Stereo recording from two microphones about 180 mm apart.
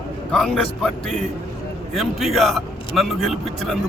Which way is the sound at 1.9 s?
Centre (ahead or behind).